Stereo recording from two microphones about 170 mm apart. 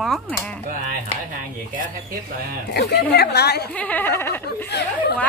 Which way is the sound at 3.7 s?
10° left (ahead or behind).